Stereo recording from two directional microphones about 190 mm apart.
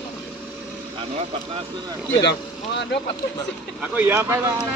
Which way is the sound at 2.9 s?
65° left (ahead or behind).